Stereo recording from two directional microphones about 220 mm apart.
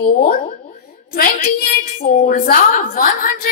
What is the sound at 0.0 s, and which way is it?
A woman's voice, 40° left (ahead or behind).